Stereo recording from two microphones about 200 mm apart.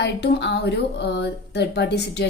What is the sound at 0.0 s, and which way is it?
Speech, 60° left (ahead or behind).